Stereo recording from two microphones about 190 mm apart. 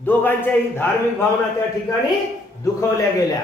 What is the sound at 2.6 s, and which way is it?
Speech, 15° left (ahead or behind).